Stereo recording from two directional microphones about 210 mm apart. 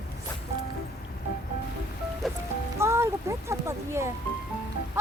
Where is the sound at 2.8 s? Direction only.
10° right (ahead or behind).